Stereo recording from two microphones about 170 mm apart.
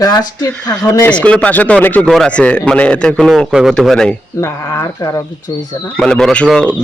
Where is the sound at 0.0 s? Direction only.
20° left (ahead or behind).